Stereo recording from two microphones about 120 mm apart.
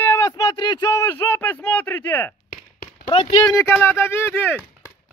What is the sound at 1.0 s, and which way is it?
Speech, 20° left (ahead or behind).